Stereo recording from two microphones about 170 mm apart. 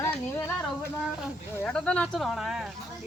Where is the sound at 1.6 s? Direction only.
5° left (ahead or behind).